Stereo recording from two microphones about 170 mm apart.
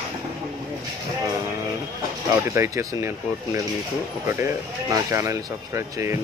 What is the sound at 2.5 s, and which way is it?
Speech, 15° right (ahead or behind).